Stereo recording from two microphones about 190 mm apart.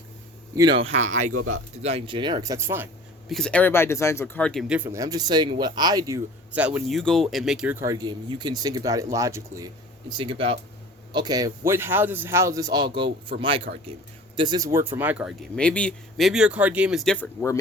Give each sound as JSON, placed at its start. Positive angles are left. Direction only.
{"t": 0.5, "sound": "speech", "side_deg": -20}
{"t": 3.2, "sound": "speech", "side_deg": 5}
{"t": 4.7, "sound": "speech", "side_deg": -10}
{"t": 10.2, "sound": "speech", "side_deg": -30}
{"t": 13.7, "sound": "speech", "side_deg": -60}
{"t": 14.3, "sound": "speech", "side_deg": -20}
{"t": 15.5, "sound": "speech", "side_deg": 5}